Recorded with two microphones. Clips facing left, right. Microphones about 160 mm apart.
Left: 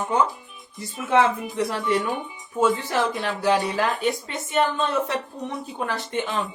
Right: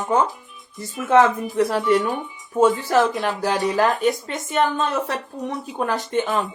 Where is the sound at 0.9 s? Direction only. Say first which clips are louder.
Right 4 dB; 50° right (ahead or behind).